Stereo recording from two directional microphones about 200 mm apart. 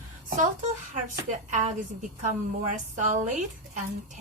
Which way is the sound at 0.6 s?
40° right (ahead or behind).